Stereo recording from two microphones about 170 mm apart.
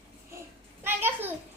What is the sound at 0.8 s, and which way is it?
Speech, 10° right (ahead or behind).